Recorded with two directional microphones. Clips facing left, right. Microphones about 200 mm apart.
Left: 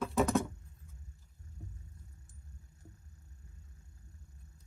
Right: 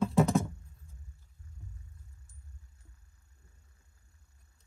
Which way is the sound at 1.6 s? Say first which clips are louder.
Left 2 dB; 40° left (ahead or behind).